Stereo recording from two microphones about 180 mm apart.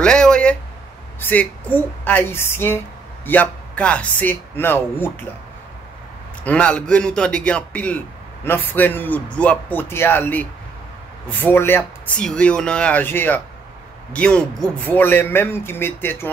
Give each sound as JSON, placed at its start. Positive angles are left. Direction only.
{"t": 0.0, "sound": "a sound", "side_deg": 5}
{"t": 1.2, "sound": "speech", "side_deg": 10}
{"t": 6.4, "sound": "a man's voice", "side_deg": 5}